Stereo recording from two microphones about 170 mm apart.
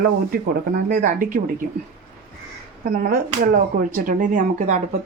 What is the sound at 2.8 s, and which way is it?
Speech, 60° right (ahead or behind).